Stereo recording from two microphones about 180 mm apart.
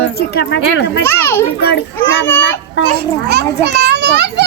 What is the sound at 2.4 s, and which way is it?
Speech, 90° left.